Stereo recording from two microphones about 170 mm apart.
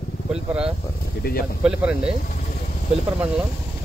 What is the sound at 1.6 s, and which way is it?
Speech, 5° right (ahead or behind).